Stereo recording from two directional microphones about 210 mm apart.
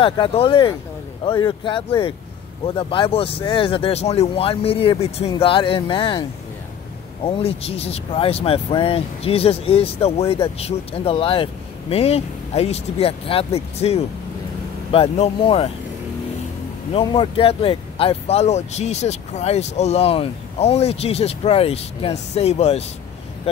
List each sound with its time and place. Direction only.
0.0 s speech: 25° left (ahead or behind)
7.2 s speech: 25° left (ahead or behind)
16.9 s speech: 25° left (ahead or behind)